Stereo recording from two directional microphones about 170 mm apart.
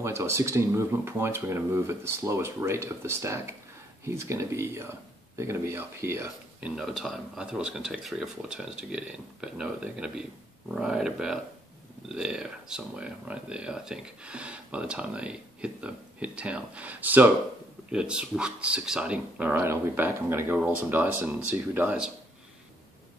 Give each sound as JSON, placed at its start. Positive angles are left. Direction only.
{"t": 0.0, "sound": "speech", "side_deg": -15}
{"t": 6.7, "sound": "speech", "side_deg": 0}